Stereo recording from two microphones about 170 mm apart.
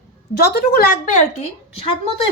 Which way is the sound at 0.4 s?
65° left (ahead or behind).